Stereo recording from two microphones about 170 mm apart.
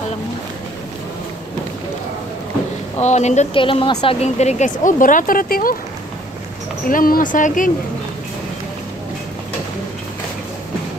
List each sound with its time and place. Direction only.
3.0 s speech: 40° left (ahead or behind)
6.9 s speech: 55° left (ahead or behind)